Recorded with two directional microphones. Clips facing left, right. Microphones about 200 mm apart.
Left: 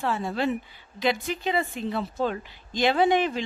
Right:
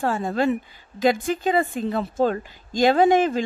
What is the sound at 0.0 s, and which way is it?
A woman's voice, 45° right (ahead or behind).